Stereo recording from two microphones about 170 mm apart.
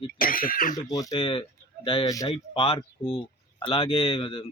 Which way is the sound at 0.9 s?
25° left (ahead or behind).